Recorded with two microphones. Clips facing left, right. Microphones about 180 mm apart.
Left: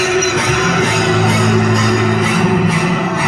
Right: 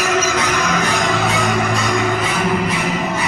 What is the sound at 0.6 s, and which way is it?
Music, 90° left.